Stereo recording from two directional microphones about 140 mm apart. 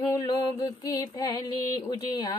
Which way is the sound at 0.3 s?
25° left (ahead or behind).